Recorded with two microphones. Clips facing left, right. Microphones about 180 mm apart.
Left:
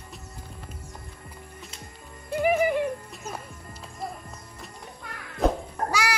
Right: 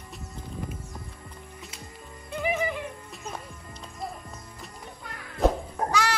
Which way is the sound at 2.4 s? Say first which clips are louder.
Left 6 dB; 55° left (ahead or behind).